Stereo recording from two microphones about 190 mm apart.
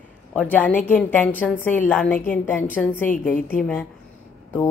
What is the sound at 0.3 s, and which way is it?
A woman's voice, 5° left (ahead or behind).